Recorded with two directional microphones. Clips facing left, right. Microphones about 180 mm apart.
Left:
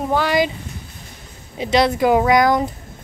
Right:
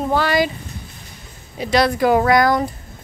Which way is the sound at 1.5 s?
20° left (ahead or behind).